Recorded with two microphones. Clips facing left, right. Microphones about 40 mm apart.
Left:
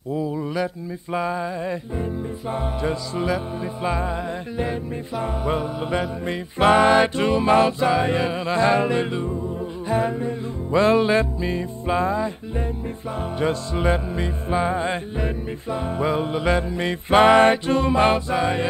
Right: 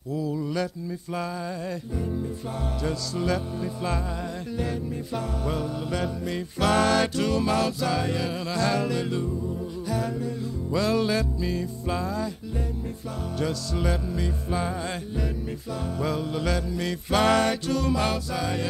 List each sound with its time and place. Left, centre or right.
0.1 s mantra: left
1.1 s music: left
5.2 s music: left